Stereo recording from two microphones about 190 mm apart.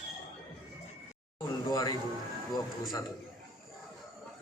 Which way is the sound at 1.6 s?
20° left (ahead or behind).